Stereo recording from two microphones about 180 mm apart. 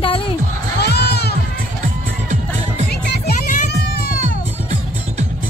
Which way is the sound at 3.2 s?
45° left (ahead or behind).